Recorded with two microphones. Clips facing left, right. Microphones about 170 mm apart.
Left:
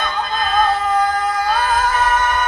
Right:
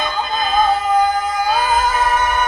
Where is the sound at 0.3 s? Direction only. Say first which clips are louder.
Right 1 dB; 5° right (ahead or behind).